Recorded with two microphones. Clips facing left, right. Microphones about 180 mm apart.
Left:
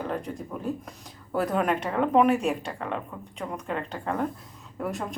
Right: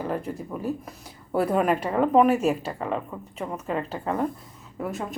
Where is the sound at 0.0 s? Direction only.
5° right (ahead or behind).